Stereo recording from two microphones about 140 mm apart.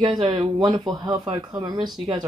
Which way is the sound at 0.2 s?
35° right (ahead or behind).